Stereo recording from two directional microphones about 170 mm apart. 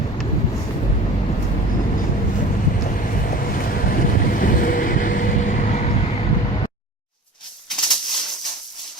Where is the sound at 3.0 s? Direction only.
50° left (ahead or behind).